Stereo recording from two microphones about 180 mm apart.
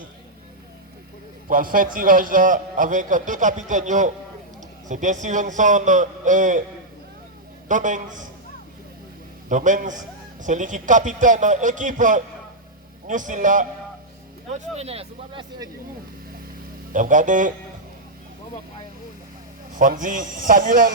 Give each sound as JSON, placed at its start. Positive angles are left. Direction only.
{"t": 1.5, "sound": "a man's voice", "side_deg": -50}
{"t": 7.7, "sound": "a man's voice", "side_deg": -45}
{"t": 9.5, "sound": "a man's voice", "side_deg": -45}
{"t": 16.9, "sound": "a man's voice", "side_deg": -45}
{"t": 19.7, "sound": "a man's voice", "side_deg": -45}